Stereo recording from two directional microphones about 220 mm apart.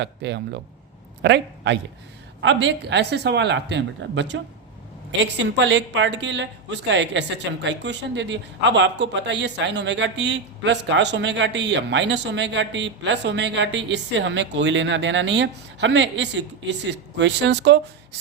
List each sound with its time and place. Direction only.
0.0 s a woman's voice: 50° right (ahead or behind)